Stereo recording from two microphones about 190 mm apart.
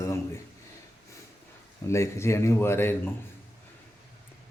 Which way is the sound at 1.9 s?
15° left (ahead or behind).